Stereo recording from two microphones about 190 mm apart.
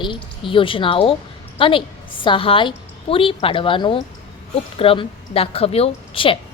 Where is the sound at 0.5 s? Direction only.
25° left (ahead or behind).